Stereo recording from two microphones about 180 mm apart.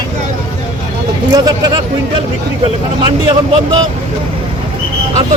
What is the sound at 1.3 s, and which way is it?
Speech, 20° right (ahead or behind).